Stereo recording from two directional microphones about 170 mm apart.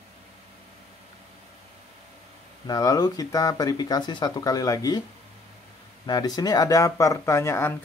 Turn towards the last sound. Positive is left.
turn(degrees=15)  # may be behind; listen again after turning